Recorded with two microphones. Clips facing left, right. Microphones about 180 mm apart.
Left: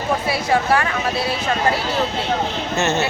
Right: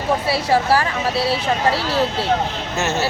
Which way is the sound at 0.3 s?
30° right (ahead or behind).